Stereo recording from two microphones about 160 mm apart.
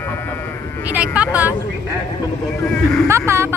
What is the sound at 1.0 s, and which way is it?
Vehicle, 10° right (ahead or behind).